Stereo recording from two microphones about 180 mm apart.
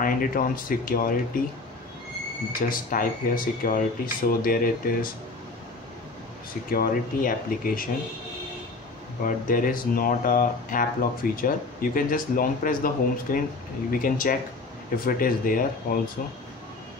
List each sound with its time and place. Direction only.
0.0 s speech: 50° left (ahead or behind)
2.7 s speech: 50° left (ahead or behind)
6.7 s speech: 50° left (ahead or behind)
9.2 s speech: 50° left (ahead or behind)